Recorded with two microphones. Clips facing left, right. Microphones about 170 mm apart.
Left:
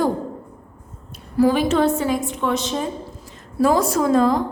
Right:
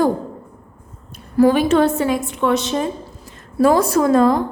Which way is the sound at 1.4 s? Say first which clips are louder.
Right 3 dB; 60° right (ahead or behind).